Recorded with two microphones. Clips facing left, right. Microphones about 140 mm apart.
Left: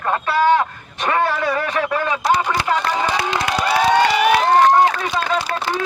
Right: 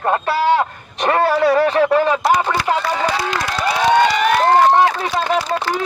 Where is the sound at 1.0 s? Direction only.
35° right (ahead or behind).